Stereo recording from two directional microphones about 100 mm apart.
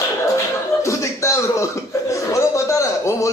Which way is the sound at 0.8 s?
30° left (ahead or behind).